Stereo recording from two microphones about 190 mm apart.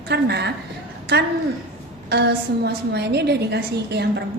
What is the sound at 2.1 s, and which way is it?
A woman's voice, 60° right (ahead or behind).